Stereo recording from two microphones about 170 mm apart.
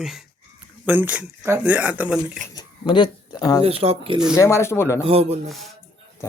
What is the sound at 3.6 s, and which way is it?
Speech, 35° right (ahead or behind).